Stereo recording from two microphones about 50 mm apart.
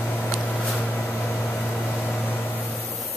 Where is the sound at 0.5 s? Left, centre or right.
Centre.